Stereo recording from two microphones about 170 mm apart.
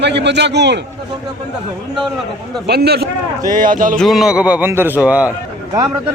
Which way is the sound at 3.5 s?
55° right (ahead or behind).